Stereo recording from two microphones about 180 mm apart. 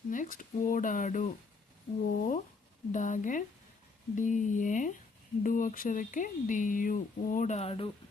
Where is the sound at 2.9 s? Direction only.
45° left (ahead or behind).